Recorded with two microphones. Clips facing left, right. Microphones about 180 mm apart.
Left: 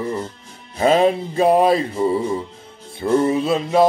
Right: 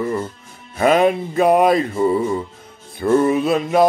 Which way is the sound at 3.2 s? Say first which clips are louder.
Right 2 dB; 30° left (ahead or behind).